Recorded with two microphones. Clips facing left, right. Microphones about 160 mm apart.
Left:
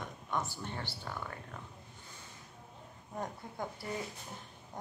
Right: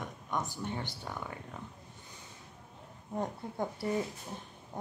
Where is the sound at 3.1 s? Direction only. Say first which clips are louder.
Right 5 dB; 25° right (ahead or behind).